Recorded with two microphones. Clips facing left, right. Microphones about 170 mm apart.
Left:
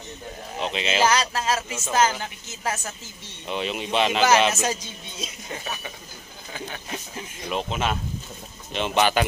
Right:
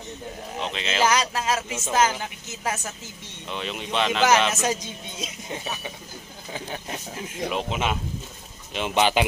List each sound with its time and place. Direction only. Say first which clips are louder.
0.6 s speech: left 2 dB; 5° left (ahead or behind)
1.0 s a woman's voice: right 1 dB; 15° right (ahead or behind)
3.4 s speech: left 4 dB; 5° left (ahead or behind)
5.2 s a woman's voice: right 1 dB; 15° right (ahead or behind)
7.4 s a woman's voice: even; 5° right (ahead or behind)